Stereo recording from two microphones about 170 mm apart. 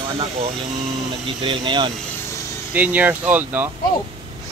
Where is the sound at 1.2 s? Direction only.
30° right (ahead or behind).